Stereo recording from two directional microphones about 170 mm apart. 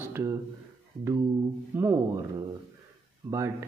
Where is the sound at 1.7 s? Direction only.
15° right (ahead or behind).